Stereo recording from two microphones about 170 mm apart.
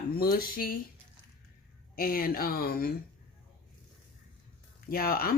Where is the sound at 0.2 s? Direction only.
60° left (ahead or behind).